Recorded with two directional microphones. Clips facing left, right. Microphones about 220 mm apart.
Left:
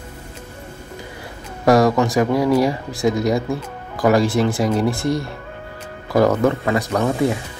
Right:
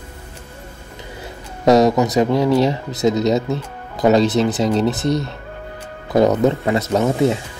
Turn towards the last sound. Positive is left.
turn(degrees=-20)  # may be behind; listen again after turning